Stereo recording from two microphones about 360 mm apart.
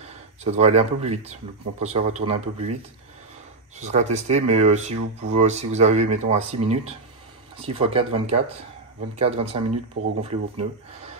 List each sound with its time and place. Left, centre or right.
0.0 s speech: centre
9.9 s speech: right